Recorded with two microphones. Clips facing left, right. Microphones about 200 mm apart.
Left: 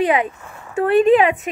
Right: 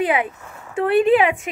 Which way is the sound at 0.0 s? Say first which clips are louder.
Left 2 dB; 10° right (ahead or behind).